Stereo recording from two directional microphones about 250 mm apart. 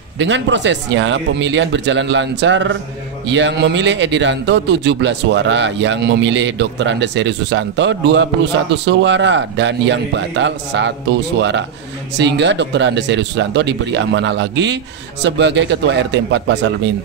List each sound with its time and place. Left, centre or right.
0.2 s a man's voice: right